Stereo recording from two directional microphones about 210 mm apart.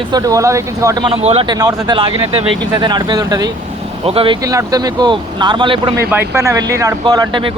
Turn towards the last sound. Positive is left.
turn(degrees=-20)  # may be behind; listen again after turning